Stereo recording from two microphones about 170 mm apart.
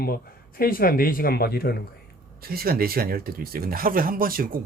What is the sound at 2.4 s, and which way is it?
Speech, 60° right (ahead or behind).